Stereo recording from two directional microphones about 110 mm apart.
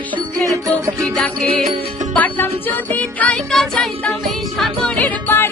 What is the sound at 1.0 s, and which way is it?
Music, 10° left (ahead or behind).